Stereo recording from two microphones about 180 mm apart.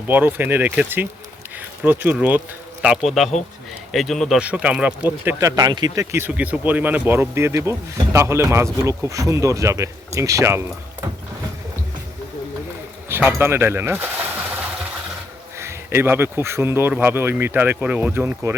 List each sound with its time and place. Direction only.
0.1 s speech: 10° right (ahead or behind)
13.1 s speech: 10° right (ahead or behind)
15.5 s speech: 15° right (ahead or behind)